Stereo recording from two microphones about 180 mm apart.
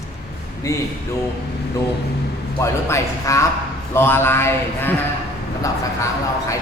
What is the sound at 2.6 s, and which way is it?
Speech, 15° left (ahead or behind).